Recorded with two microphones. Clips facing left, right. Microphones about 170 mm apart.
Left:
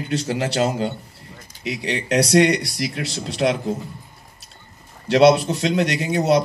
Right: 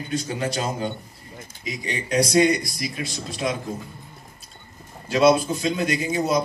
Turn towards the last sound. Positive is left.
turn(degrees=75)  # may be behind; listen again after turning